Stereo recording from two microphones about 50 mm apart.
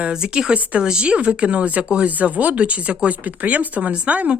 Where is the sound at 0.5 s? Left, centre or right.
Right.